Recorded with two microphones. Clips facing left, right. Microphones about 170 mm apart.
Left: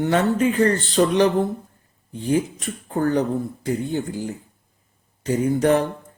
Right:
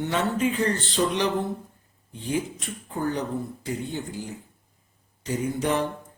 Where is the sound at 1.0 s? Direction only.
65° left (ahead or behind).